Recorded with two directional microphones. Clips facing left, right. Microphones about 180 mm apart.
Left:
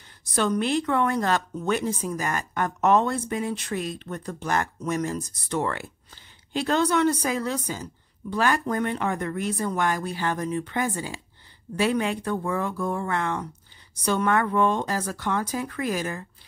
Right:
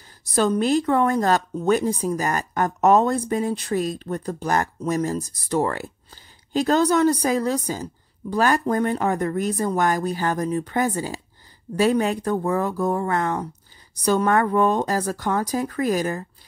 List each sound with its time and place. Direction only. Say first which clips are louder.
0.2 s speech: right 4 dB; 35° right (ahead or behind)